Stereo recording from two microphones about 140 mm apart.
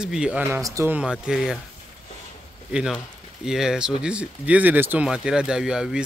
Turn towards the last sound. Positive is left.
turn(degrees=-5)  # may be behind; listen again after turning